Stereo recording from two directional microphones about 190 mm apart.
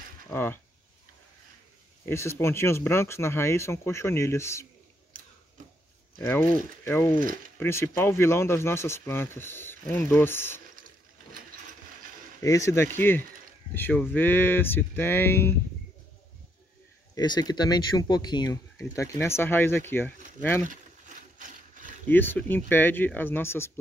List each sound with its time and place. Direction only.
0.3 s speech: 10° left (ahead or behind)
2.0 s speech: 15° left (ahead or behind)
6.1 s speech: 10° left (ahead or behind)
12.4 s speech: 15° left (ahead or behind)
17.1 s speech: 20° left (ahead or behind)
21.4 s wood: 40° right (ahead or behind)
22.1 s speech: 10° left (ahead or behind)